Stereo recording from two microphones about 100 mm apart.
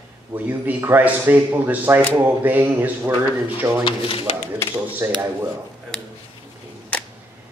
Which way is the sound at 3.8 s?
60° left (ahead or behind).